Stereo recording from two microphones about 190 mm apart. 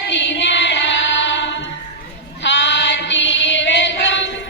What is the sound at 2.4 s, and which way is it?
Choir, 70° left (ahead or behind).